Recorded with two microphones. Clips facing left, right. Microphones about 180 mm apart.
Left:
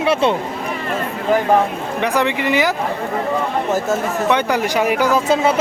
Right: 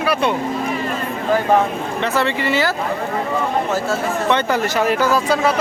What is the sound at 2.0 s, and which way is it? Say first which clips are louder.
Speech: left 2 dB; 15° left (ahead or behind).